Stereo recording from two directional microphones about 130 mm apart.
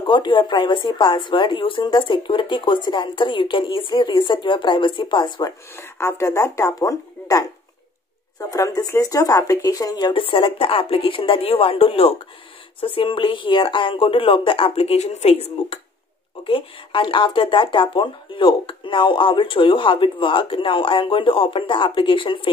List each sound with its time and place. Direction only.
0.0 s speech: 40° left (ahead or behind)
5.8 s speech: 20° left (ahead or behind); by 15.4 s 55° left (ahead or behind)
16.4 s speech: 45° left (ahead or behind)